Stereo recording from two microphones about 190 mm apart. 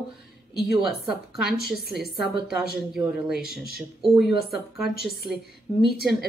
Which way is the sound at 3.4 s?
55° right (ahead or behind).